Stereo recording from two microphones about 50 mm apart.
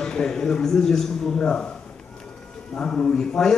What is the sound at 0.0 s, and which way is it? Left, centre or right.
A man's voice, centre.